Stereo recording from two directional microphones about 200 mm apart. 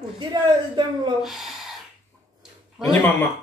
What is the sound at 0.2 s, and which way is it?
Speech, 20° right (ahead or behind).